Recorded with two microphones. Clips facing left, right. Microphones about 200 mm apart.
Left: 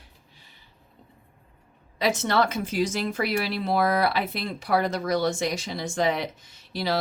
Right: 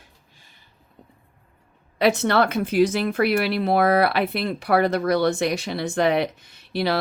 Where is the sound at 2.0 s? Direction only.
60° right (ahead or behind).